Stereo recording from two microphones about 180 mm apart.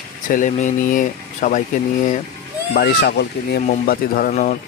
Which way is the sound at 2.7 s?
60° left (ahead or behind).